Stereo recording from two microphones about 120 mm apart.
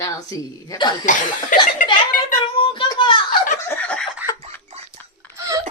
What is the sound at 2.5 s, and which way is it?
Child singing, 45° left (ahead or behind).